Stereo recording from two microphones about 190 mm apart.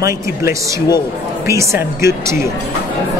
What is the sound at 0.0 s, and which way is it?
Speech, 15° right (ahead or behind).